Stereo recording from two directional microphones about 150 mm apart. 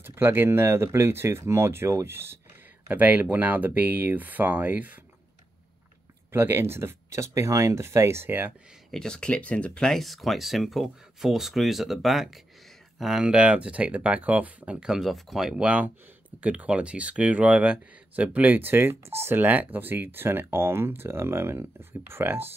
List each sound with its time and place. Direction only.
0.0 s speech: 15° right (ahead or behind)
6.3 s speech: 15° right (ahead or behind)
8.9 s speech: 5° left (ahead or behind); by 22.5 s 15° right (ahead or behind)